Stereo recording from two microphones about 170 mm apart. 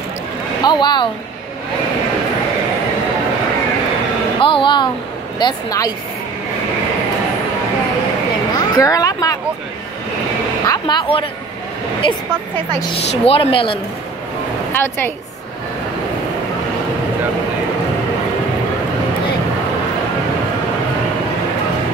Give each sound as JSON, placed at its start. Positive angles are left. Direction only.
{"t": 0.6, "sound": "speech", "side_deg": 25}
{"t": 4.4, "sound": "a woman's voice", "side_deg": 30}
{"t": 8.5, "sound": "speech", "side_deg": 20}
{"t": 10.6, "sound": "a woman's voice", "side_deg": 25}
{"t": 13.2, "sound": "speech", "side_deg": 30}
{"t": 14.7, "sound": "a woman's voice", "side_deg": 15}